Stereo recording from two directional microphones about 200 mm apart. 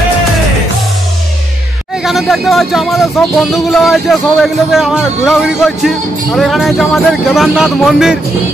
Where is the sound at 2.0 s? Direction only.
Centre (ahead or behind).